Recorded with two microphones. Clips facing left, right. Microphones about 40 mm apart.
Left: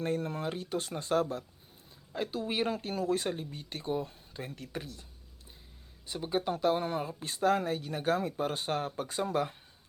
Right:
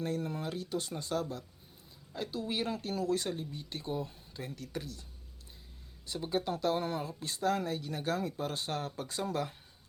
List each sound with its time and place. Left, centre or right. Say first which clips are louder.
0.0 s speech: left 3 dB; left
4.5 s speech: even; left
6.1 s speech: left 2 dB; centre